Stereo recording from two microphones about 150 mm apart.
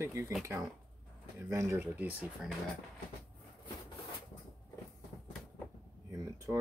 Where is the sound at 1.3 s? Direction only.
20° right (ahead or behind).